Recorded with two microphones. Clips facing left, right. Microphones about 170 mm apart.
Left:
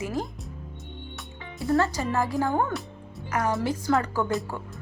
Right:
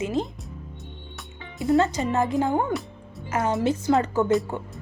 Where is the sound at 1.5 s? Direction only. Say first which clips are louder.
Right 3 dB; 20° right (ahead or behind).